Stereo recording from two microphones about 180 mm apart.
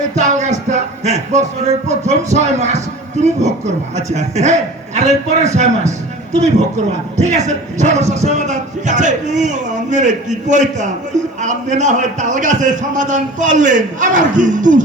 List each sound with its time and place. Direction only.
0.1 s a sound: 40° right (ahead or behind)
1.9 s speech: 40° right (ahead or behind)
7.2 s a man's voice: 40° right (ahead or behind)